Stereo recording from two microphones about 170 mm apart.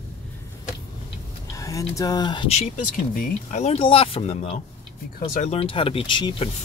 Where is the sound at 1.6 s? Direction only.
20° left (ahead or behind).